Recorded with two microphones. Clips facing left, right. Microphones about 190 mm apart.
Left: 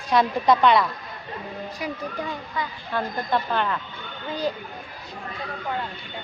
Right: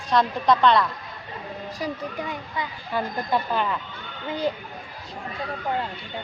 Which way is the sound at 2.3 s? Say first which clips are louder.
Left 1 dB; 20° right (ahead or behind).